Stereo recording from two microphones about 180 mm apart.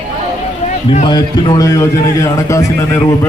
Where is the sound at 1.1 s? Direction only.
25° left (ahead or behind).